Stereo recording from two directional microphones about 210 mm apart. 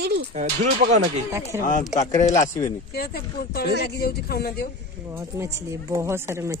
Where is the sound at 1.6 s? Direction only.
40° left (ahead or behind).